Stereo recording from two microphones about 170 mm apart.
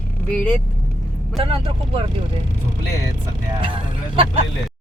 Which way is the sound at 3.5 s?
30° right (ahead or behind).